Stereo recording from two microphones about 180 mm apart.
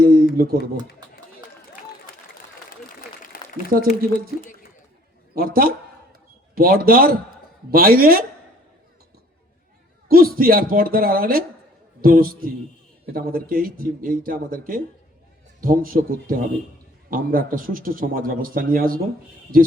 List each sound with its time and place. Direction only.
0.0 s a sound: 55° right (ahead or behind)
0.3 s speech: 55° right (ahead or behind)
3.3 s a sound: 55° left (ahead or behind)
3.7 s a man's voice: 50° right (ahead or behind)
5.3 s a woman's voice: 55° right (ahead or behind)
10.1 s a woman's voice: 55° right (ahead or behind)